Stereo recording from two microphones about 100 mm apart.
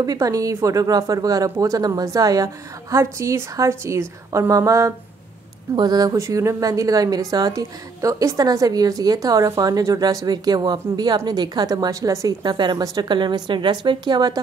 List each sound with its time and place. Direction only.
0.0 s a woman's voice: 40° right (ahead or behind)
6.1 s a woman's voice: 30° right (ahead or behind)
12.5 s a woman's voice: 50° right (ahead or behind)